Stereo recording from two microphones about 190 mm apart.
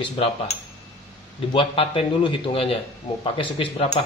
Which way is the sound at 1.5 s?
30° left (ahead or behind).